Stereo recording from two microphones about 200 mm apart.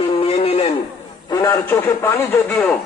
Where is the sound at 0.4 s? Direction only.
30° left (ahead or behind).